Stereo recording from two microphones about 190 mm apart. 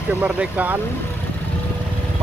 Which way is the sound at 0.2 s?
10° right (ahead or behind).